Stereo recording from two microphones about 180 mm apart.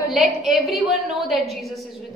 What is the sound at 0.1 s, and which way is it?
Speech, centre (ahead or behind).